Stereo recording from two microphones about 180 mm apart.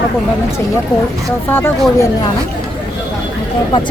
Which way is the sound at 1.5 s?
10° left (ahead or behind).